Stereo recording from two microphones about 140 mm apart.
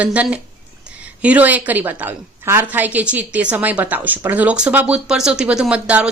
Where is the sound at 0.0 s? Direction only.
10° right (ahead or behind).